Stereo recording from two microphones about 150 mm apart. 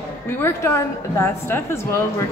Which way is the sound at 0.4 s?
15° left (ahead or behind).